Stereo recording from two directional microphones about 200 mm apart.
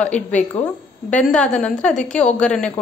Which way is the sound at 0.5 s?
35° left (ahead or behind).